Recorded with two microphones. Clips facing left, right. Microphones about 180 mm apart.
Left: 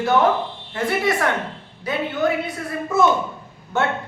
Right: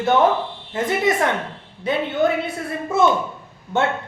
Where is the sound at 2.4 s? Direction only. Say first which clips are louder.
Right 1 dB; 25° right (ahead or behind).